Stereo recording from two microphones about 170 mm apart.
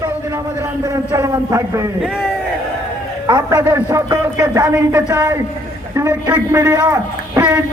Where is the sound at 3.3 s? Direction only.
20° right (ahead or behind).